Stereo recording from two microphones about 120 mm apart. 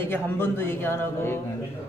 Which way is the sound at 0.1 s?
20° left (ahead or behind).